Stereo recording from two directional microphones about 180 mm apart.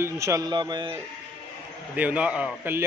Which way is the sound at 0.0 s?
15° right (ahead or behind).